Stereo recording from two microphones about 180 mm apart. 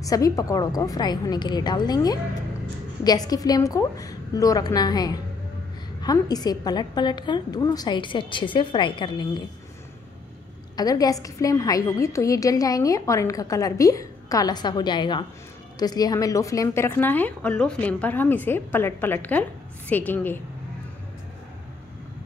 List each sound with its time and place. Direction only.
0.0 s a woman's voice: 20° left (ahead or behind)
10.8 s a woman's voice: 20° left (ahead or behind)